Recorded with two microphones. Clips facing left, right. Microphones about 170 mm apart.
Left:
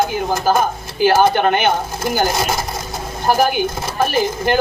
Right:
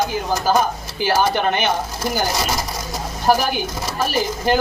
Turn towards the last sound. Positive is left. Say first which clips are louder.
# left 2 dB
turn(degrees=50)  # may be behind; listen again after turning